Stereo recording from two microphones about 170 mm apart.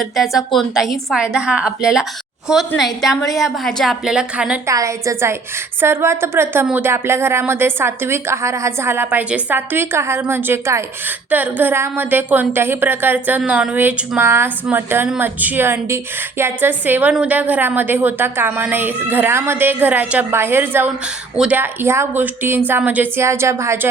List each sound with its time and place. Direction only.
0.0 s a woman's voice: centre (ahead or behind)
4.6 s speech: 20° right (ahead or behind)